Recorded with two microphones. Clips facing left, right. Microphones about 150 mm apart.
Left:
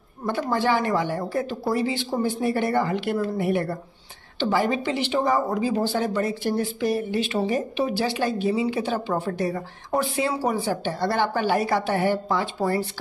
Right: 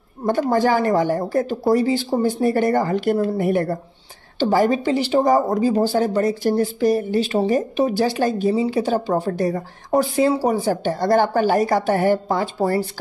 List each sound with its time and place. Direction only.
0.2 s speech: 45° right (ahead or behind)